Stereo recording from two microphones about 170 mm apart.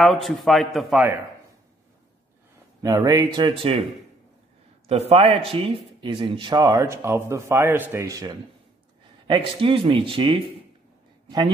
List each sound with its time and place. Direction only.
0.0 s a man's voice: centre (ahead or behind)
2.8 s speech: 20° right (ahead or behind)
4.8 s a man's voice: 35° right (ahead or behind)